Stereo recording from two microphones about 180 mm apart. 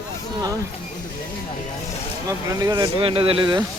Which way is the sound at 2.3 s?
20° right (ahead or behind).